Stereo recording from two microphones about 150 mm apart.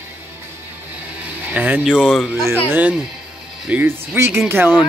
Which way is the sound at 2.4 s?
15° right (ahead or behind).